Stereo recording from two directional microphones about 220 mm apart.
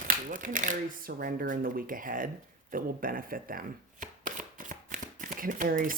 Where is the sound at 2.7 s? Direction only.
40° right (ahead or behind).